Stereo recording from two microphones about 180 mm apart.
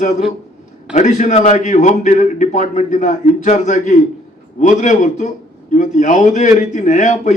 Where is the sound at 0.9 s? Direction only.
40° left (ahead or behind).